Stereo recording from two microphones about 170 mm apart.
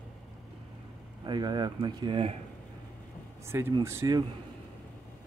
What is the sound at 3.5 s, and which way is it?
Speech, 15° right (ahead or behind).